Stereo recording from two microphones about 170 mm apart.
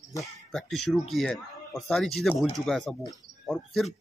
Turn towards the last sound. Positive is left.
turn(degrees=0)  # may be behind; listen again after turning